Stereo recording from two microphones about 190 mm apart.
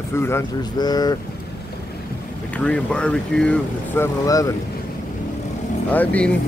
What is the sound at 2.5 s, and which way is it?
Speech, 5° left (ahead or behind).